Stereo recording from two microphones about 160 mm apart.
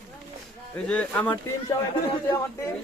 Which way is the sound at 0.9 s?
10° left (ahead or behind).